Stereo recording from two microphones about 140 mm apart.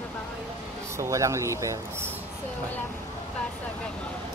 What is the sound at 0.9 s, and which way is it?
Speech, 20° right (ahead or behind).